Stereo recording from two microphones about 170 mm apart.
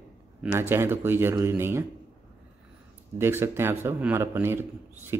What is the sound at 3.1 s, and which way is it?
Speech, 15° right (ahead or behind).